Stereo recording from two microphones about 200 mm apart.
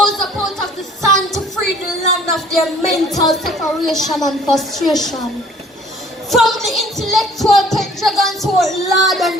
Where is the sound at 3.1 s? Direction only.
Centre (ahead or behind).